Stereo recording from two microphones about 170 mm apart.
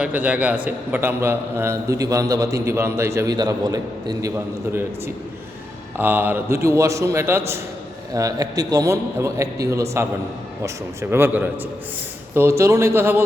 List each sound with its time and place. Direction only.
0.0 s a man's voice: 10° right (ahead or behind)
6.0 s a man's voice: 10° right (ahead or behind)